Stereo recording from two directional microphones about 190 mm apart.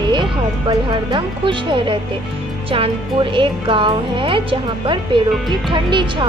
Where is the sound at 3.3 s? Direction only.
25° right (ahead or behind).